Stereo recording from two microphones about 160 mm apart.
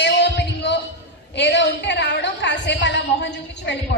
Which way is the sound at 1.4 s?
90° left.